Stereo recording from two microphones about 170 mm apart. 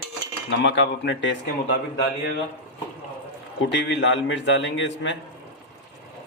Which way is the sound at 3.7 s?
90° left.